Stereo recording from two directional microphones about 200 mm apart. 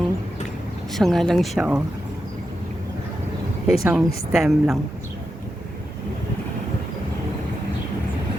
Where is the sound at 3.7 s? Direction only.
5° right (ahead or behind).